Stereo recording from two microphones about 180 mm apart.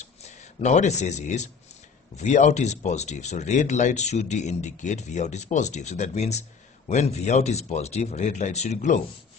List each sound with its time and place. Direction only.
0.0 s speech: 40° left (ahead or behind)